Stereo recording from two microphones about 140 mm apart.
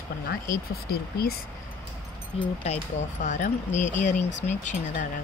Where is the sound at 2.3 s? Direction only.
50° left (ahead or behind).